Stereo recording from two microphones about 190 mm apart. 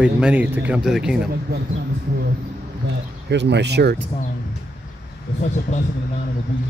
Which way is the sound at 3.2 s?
65° right (ahead or behind).